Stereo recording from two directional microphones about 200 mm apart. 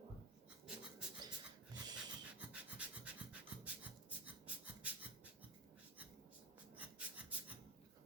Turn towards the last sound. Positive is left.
turn(degrees=-5)  # may be behind; listen again after turning